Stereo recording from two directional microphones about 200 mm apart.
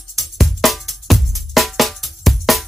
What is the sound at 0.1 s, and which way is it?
Music, centre (ahead or behind).